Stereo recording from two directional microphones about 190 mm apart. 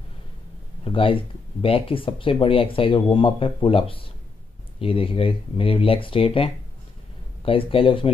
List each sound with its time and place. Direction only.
0.8 s speech: 30° left (ahead or behind)